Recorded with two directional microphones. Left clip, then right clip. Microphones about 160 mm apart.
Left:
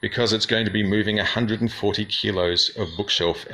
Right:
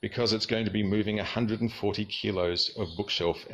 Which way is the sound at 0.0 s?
5° right (ahead or behind).